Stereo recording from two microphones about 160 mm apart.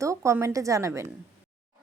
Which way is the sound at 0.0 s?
20° right (ahead or behind).